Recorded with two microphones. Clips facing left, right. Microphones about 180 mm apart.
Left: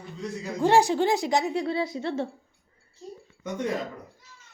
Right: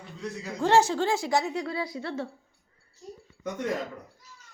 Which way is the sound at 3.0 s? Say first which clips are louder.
Left 2 dB; 30° left (ahead or behind).